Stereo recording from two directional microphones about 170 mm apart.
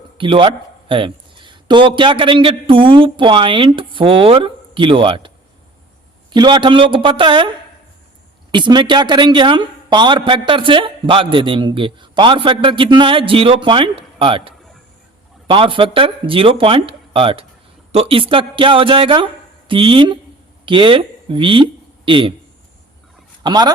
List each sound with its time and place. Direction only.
0.2 s a man's voice: 30° right (ahead or behind)
6.3 s a man's voice: 25° right (ahead or behind)
8.5 s a man's voice: 25° right (ahead or behind)
23.4 s a man's voice: 25° right (ahead or behind)